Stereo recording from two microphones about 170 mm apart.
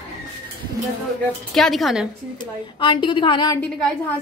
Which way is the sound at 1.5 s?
Centre (ahead or behind).